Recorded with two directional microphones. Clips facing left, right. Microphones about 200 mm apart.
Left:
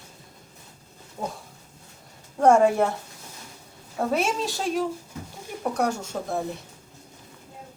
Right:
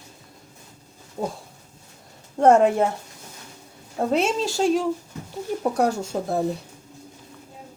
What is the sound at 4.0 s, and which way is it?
A woman's voice, 25° right (ahead or behind).